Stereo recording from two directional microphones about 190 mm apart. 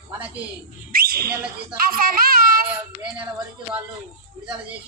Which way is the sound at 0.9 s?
50° right (ahead or behind).